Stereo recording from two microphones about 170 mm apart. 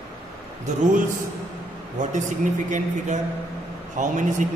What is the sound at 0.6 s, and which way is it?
A man's voice, 45° right (ahead or behind).